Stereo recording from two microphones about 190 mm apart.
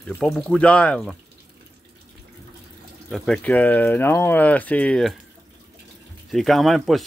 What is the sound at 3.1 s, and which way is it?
Speech, centre (ahead or behind).